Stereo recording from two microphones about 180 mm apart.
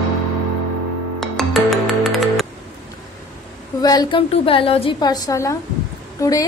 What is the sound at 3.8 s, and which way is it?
A woman's voice, 20° left (ahead or behind).